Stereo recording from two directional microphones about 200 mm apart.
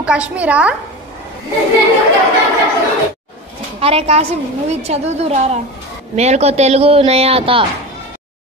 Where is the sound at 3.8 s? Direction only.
30° right (ahead or behind).